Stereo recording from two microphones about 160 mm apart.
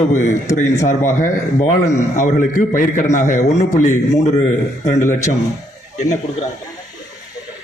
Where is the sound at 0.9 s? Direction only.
50° left (ahead or behind).